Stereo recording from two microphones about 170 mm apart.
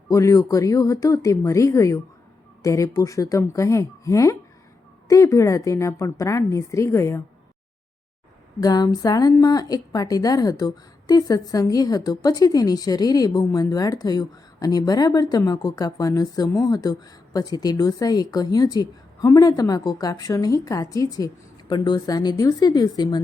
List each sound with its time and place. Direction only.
0.1 s a woman's voice: 20° left (ahead or behind)
8.6 s a woman's voice: 20° left (ahead or behind)